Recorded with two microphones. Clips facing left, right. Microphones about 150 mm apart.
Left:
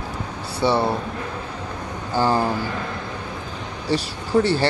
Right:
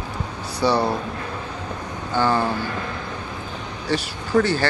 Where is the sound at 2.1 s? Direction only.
35° left (ahead or behind).